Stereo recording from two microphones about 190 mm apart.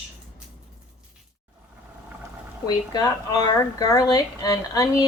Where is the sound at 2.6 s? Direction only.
20° left (ahead or behind).